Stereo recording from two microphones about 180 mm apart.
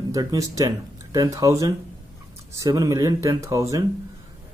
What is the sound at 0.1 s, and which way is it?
Speech, 20° right (ahead or behind).